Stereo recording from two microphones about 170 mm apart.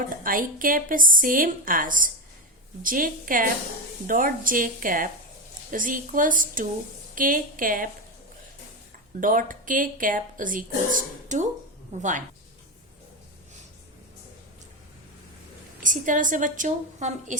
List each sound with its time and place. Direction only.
0.2 s speech: 55° right (ahead or behind)
9.2 s speech: 50° right (ahead or behind)
15.8 s speech: 50° right (ahead or behind)